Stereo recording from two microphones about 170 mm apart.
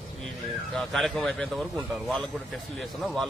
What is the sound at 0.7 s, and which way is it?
Speech, centre (ahead or behind).